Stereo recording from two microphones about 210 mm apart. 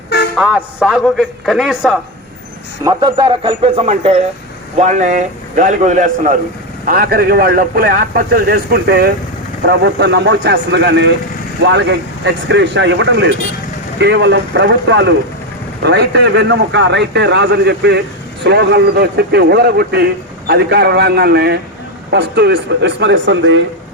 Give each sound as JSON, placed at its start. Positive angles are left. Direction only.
{"t": 0.3, "sound": "a man's voice", "side_deg": -5}
{"t": 2.8, "sound": "a man's voice", "side_deg": -20}